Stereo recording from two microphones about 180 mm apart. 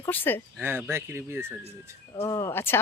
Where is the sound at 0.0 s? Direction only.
10° left (ahead or behind).